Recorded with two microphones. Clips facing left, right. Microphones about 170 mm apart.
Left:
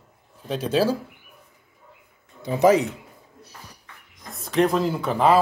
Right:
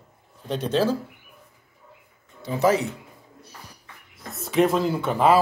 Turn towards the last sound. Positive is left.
turn(degrees=0)  # may be behind; listen again after turning